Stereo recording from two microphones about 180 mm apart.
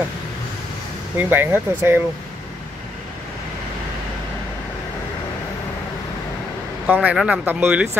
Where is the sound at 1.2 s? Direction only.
10° right (ahead or behind).